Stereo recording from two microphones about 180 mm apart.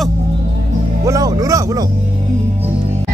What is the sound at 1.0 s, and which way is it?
Music, 20° right (ahead or behind).